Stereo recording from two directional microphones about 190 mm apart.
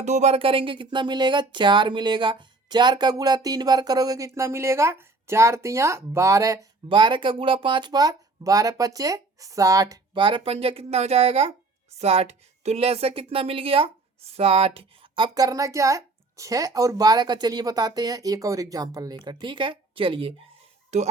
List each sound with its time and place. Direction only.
0.0 s speech: 35° right (ahead or behind)